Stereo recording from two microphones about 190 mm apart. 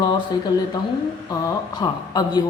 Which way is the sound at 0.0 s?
20° left (ahead or behind).